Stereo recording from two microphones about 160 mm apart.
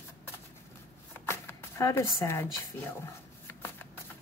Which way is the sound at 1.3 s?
15° left (ahead or behind).